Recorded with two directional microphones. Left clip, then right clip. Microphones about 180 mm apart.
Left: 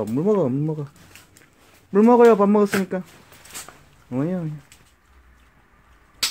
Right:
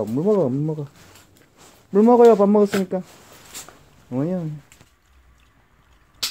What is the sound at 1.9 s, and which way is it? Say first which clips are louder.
Speech: right 1 dB; centre (ahead or behind).